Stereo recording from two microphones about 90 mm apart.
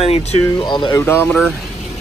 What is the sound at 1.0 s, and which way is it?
Speech, 25° left (ahead or behind).